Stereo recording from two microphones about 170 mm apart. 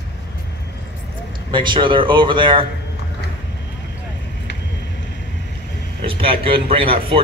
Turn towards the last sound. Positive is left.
turn(degrees=-30)  # may be behind; listen again after turning